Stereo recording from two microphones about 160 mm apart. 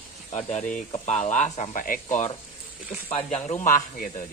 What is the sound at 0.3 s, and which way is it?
Speech, 45° left (ahead or behind).